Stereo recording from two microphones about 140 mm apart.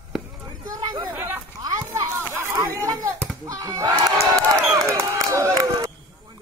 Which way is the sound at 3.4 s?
25° right (ahead or behind).